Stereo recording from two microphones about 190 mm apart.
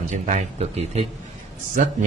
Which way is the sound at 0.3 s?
35° right (ahead or behind).